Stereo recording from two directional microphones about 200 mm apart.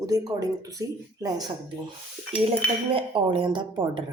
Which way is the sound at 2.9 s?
25° right (ahead or behind).